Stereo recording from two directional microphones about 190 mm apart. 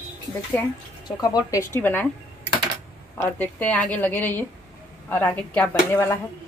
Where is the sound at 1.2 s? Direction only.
20° left (ahead or behind).